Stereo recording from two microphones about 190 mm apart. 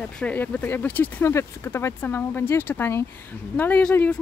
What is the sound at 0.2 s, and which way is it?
Speech, 10° left (ahead or behind).